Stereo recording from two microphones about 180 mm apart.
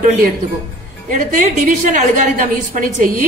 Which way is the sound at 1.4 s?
45° right (ahead or behind).